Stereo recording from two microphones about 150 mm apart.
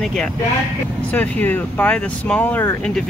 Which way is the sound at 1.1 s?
10° left (ahead or behind).